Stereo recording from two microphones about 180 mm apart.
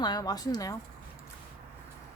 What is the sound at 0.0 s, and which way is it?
Speech, 20° left (ahead or behind).